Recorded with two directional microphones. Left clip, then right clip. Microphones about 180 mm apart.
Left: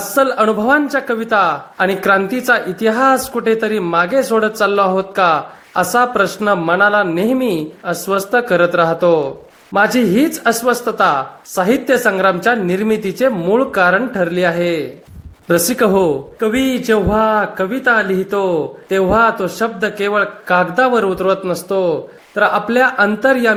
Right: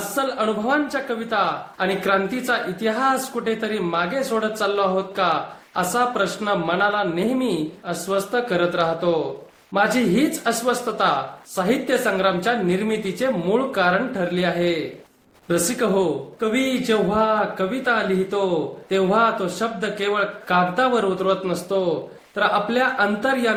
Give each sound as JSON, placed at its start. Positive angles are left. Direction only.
{"t": 0.1, "sound": "a man's voice", "side_deg": 40}